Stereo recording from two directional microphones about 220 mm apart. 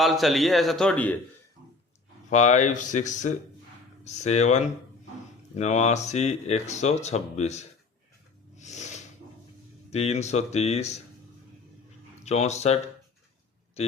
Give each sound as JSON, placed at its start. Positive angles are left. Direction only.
{"t": 0.0, "sound": "a man's voice", "side_deg": 0}
{"t": 2.3, "sound": "speech", "side_deg": 30}
{"t": 8.5, "sound": "a sound", "side_deg": 30}
{"t": 9.9, "sound": "speech", "side_deg": 30}
{"t": 12.2, "sound": "speech", "side_deg": 30}